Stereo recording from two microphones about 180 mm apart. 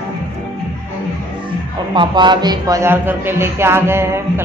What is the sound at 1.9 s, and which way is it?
Speech, 25° right (ahead or behind).